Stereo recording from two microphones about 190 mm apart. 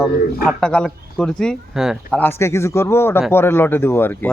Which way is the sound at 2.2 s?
10° left (ahead or behind).